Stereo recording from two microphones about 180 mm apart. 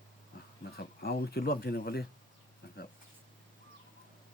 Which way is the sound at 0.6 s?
60° left (ahead or behind).